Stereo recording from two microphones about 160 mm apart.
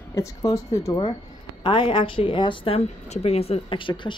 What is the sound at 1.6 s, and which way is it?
A woman's voice, 30° left (ahead or behind).